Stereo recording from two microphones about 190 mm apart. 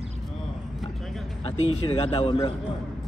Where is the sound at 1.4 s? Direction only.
30° left (ahead or behind).